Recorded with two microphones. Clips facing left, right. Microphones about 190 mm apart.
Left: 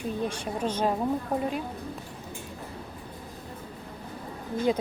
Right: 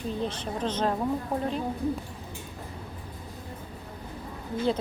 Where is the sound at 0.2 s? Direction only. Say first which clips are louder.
Left 1 dB; 10° left (ahead or behind).